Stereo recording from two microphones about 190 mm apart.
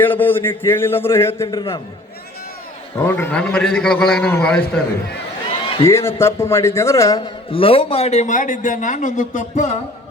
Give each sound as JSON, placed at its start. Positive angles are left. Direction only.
{"t": 0.0, "sound": "a man's voice", "side_deg": 10}
{"t": 3.0, "sound": "a man's voice", "side_deg": 10}
{"t": 5.8, "sound": "a man's voice", "side_deg": 15}